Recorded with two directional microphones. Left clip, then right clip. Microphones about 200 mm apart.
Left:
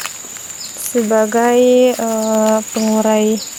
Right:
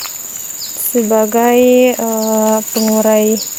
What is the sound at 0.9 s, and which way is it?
Speech, 20° right (ahead or behind).